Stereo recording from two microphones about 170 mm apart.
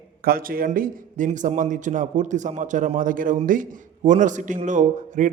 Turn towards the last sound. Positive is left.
turn(degrees=-45)  # may be behind; listen again after turning